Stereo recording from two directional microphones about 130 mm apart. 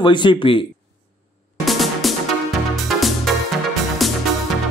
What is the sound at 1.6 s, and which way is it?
Music, centre (ahead or behind).